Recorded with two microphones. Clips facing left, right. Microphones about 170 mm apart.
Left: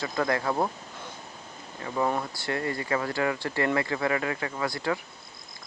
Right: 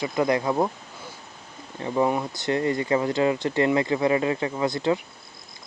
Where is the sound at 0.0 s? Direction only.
20° right (ahead or behind).